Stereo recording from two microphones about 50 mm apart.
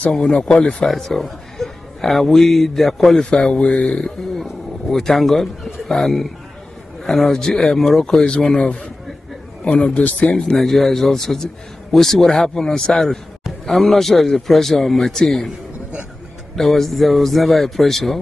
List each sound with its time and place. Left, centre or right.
0.2 s speech: left
0.8 s speech: centre
9.7 s speech: left
10.3 s a man's voice: centre
16.5 s a man's voice: centre